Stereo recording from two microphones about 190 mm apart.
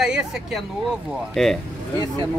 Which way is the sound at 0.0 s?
5° right (ahead or behind).